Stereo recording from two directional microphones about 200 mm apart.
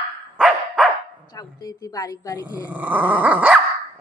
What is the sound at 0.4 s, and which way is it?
Dog, centre (ahead or behind).